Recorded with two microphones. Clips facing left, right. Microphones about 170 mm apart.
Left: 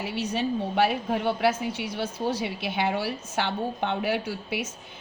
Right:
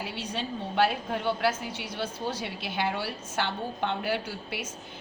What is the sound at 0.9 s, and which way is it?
A woman's voice, 55° left (ahead or behind).